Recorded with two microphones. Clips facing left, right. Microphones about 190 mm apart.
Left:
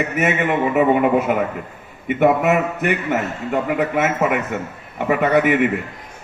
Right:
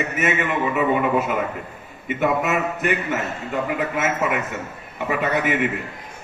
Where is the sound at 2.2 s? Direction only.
60° left (ahead or behind).